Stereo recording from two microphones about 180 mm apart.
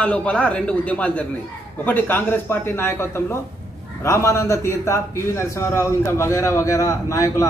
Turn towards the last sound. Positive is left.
turn(degrees=15)  # may be behind; listen again after turning